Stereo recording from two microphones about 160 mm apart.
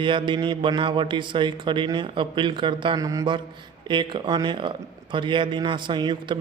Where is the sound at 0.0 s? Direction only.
30° right (ahead or behind).